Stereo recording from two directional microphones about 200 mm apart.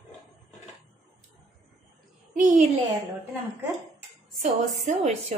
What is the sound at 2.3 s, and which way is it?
Speech, 40° right (ahead or behind).